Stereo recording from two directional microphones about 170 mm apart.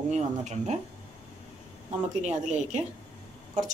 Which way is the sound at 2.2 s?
40° right (ahead or behind).